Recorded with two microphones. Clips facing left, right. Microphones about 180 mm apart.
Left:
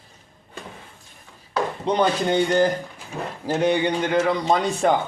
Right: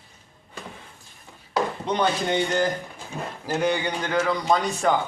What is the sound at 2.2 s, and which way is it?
A man's voice, 30° left (ahead or behind).